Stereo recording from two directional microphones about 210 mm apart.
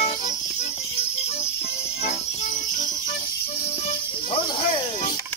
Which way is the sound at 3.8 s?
25° left (ahead or behind).